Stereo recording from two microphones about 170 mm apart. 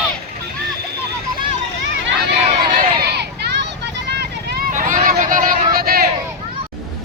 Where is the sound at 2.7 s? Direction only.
60° right (ahead or behind).